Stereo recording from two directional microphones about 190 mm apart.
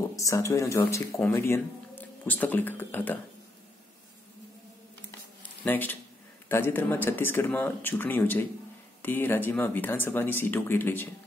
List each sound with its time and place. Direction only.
0.1 s speech: 15° left (ahead or behind)
5.7 s speech: 10° left (ahead or behind)